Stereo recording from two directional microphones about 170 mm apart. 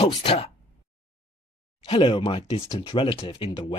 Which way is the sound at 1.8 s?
30° left (ahead or behind).